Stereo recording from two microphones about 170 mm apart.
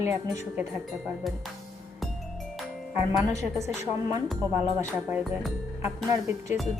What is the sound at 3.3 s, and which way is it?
Speech, 15° right (ahead or behind).